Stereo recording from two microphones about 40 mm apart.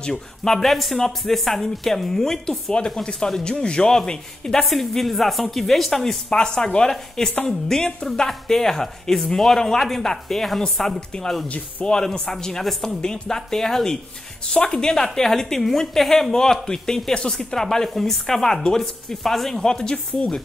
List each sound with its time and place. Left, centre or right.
0.4 s speech: centre
2.7 s speech: left
4.6 s a woman's voice: centre
6.3 s speech: centre
11.8 s a woman's voice: centre
19.6 s speech: centre